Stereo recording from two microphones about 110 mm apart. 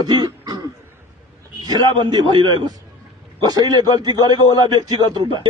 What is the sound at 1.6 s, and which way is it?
A man's voice, 35° right (ahead or behind).